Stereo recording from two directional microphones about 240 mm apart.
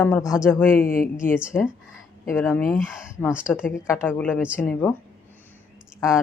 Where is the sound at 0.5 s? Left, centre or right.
Centre.